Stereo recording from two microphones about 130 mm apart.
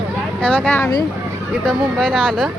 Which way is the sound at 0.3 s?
10° left (ahead or behind).